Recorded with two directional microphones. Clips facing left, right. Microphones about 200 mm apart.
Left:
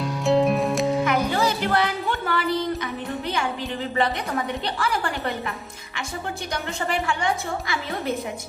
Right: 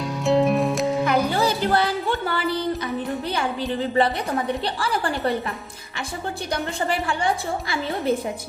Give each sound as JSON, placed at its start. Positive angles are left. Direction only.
{"t": 0.0, "sound": "music", "side_deg": 0}
{"t": 1.0, "sound": "music", "side_deg": -35}
{"t": 4.4, "sound": "a woman's voice", "side_deg": -30}
{"t": 6.5, "sound": "a woman's voice", "side_deg": -35}